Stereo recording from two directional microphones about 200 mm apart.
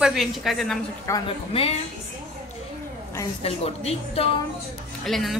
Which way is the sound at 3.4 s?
30° left (ahead or behind).